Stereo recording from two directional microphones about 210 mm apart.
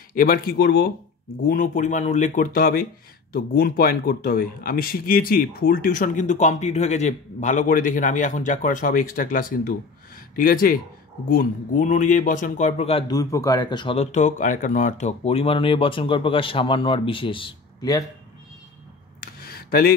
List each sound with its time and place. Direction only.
0.1 s speech: 45° left (ahead or behind); by 13.2 s 25° left (ahead or behind)
13.2 s speech: 15° left (ahead or behind)
19.2 s a sound: 45° left (ahead or behind)